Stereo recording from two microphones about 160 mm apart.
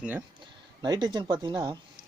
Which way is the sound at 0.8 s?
25° right (ahead or behind).